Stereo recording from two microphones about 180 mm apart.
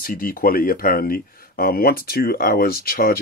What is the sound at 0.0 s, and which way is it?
Speech, 50° left (ahead or behind).